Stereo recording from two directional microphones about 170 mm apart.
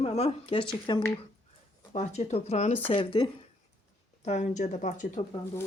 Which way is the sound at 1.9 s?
40° left (ahead or behind).